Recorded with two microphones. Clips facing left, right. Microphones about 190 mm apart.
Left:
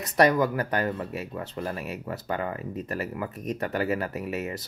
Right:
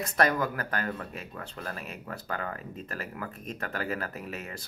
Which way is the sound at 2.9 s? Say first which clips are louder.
Left 4 dB; 10° left (ahead or behind).